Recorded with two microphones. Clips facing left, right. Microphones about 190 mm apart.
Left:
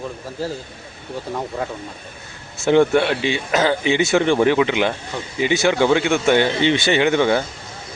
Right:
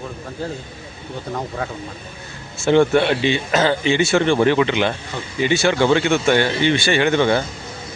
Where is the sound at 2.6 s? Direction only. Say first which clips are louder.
Even; 15° left (ahead or behind).